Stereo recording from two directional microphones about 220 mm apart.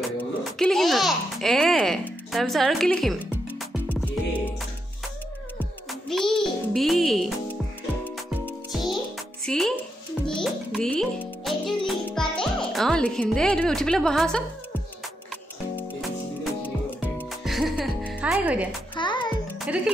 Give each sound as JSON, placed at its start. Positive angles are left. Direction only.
{"t": 0.0, "sound": "speech", "side_deg": 0}
{"t": 5.6, "sound": "a child's voice", "side_deg": 0}
{"t": 8.0, "sound": "music", "side_deg": 5}
{"t": 16.6, "sound": "music", "side_deg": 10}
{"t": 18.9, "sound": "music", "side_deg": 20}
{"t": 19.6, "sound": "music", "side_deg": -5}